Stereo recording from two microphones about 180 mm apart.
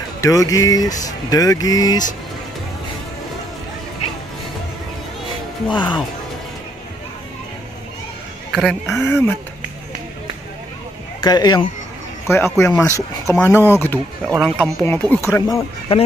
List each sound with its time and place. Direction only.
0.2 s speech: 20° left (ahead or behind)
5.7 s speech: 25° left (ahead or behind)
8.5 s speech: centre (ahead or behind)
9.0 s speech: 10° left (ahead or behind)
11.2 s speech: 25° left (ahead or behind)